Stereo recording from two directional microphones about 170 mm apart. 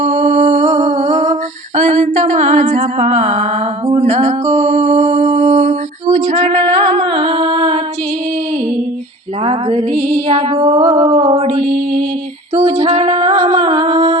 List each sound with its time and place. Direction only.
0.0 s humming: 40° right (ahead or behind)
3.8 s music: 35° right (ahead or behind)
9.4 s mantra: 35° right (ahead or behind)
12.5 s music: 35° right (ahead or behind)